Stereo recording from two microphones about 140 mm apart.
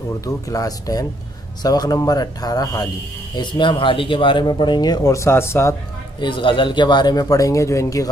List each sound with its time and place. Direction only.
0.2 s speech: 25° left (ahead or behind)
6.2 s speech: 35° left (ahead or behind)